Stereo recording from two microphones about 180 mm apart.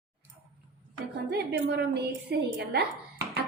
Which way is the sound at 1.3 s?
70° right (ahead or behind).